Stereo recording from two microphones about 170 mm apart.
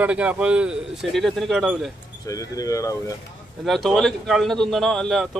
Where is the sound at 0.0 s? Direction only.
10° right (ahead or behind).